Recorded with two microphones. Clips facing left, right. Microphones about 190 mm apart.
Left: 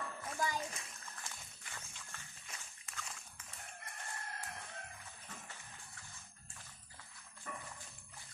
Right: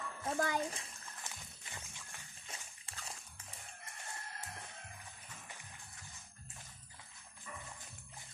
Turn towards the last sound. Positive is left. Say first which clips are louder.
# left 3 dB
turn(degrees=50)  # may be behind; listen again after turning